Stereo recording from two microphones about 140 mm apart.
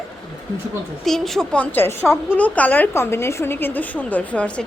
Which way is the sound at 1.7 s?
15° left (ahead or behind).